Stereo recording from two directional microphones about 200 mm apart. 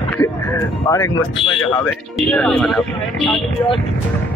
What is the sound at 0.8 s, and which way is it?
Speech, 20° left (ahead or behind).